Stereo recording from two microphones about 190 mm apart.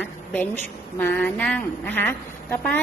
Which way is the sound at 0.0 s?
10° left (ahead or behind).